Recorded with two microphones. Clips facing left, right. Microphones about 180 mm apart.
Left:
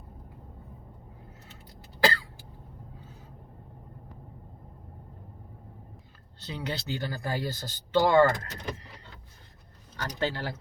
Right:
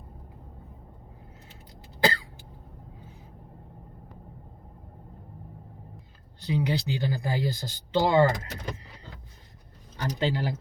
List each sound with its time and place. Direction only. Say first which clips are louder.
2.0 s cough: even; 20° right (ahead or behind)
6.4 s speech: right 7 dB; 15° right (ahead or behind)
10.0 s speech: right 3 dB; 15° right (ahead or behind)